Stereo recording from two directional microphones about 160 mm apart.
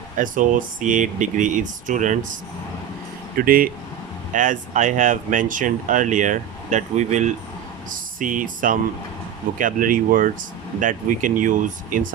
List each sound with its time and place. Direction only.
0.2 s speech: 55° right (ahead or behind)
3.3 s speech: 60° right (ahead or behind)
4.3 s speech: 50° right (ahead or behind)